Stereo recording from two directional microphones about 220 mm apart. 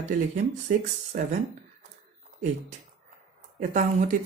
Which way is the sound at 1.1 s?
40° right (ahead or behind).